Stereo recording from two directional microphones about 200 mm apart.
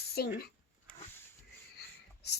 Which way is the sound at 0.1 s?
50° left (ahead or behind).